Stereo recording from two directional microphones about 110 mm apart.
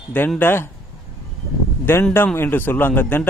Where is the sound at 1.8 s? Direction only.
20° left (ahead or behind).